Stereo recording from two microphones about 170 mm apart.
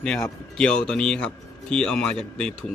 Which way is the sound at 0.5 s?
5° left (ahead or behind).